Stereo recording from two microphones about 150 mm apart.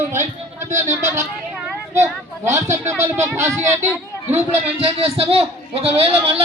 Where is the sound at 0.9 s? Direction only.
20° right (ahead or behind).